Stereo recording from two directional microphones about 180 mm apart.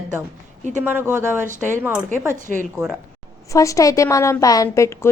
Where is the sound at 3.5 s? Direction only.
20° left (ahead or behind).